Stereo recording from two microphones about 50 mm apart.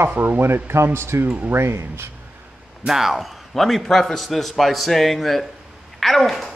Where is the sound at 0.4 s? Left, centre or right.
Right.